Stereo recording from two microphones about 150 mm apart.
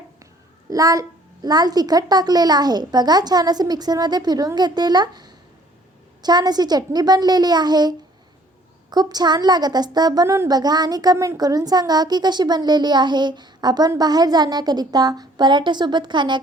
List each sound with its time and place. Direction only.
0.7 s a woman's voice: 25° right (ahead or behind)